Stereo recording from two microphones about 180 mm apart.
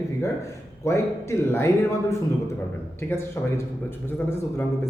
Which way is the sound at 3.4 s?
10° left (ahead or behind).